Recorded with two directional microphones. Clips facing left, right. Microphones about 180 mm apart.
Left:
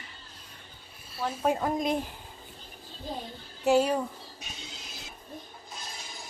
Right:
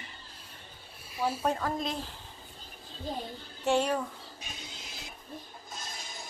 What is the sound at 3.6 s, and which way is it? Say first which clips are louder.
Speech: left 4 dB; 5° left (ahead or behind).